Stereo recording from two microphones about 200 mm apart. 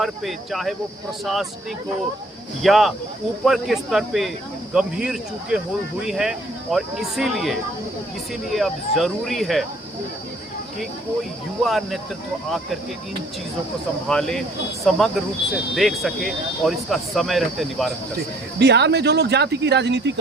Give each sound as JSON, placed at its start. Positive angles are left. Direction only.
{"t": 0.0, "sound": "speech", "side_deg": 0}
{"t": 2.6, "sound": "speech", "side_deg": 0}
{"t": 11.6, "sound": "speech", "side_deg": 0}
{"t": 14.1, "sound": "speech", "side_deg": 0}
{"t": 18.6, "sound": "speech", "side_deg": -60}